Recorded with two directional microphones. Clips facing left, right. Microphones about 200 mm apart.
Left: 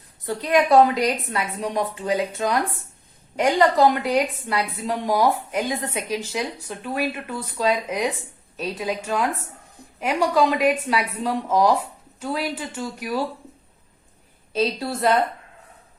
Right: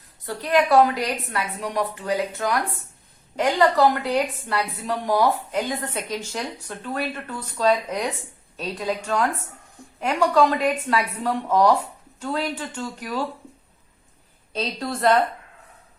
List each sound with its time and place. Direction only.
0.3 s a woman's voice: 20° left (ahead or behind)
14.5 s a woman's voice: 5° left (ahead or behind)